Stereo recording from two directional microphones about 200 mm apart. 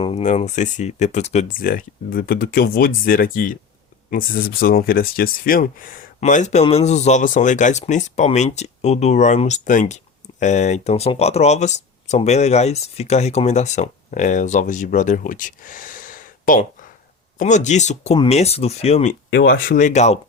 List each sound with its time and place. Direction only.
0.0 s speech: 35° left (ahead or behind)
19.5 s speech: 45° left (ahead or behind)